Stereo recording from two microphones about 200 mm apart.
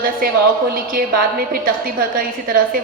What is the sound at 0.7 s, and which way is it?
A woman's voice, 45° right (ahead or behind).